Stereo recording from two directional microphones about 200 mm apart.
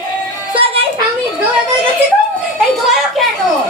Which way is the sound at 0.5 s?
30° right (ahead or behind).